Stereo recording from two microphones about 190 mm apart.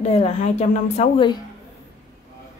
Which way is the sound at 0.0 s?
35° left (ahead or behind).